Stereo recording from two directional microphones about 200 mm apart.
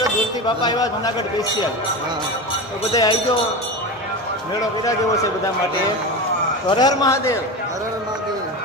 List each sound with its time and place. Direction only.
0.4 s a man's voice: 20° left (ahead or behind)
2.9 s a man's voice: 20° left (ahead or behind)
6.7 s a man's voice: 20° left (ahead or behind)